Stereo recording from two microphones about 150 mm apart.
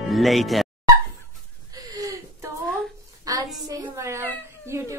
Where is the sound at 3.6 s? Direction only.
20° right (ahead or behind).